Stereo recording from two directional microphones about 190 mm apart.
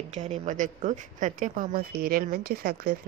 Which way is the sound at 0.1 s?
35° right (ahead or behind).